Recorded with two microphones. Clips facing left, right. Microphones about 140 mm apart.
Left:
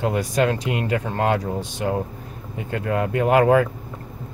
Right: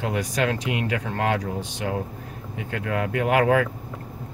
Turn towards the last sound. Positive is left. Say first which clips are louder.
# left 4 dB
turn(degrees=35)  # may be behind; listen again after turning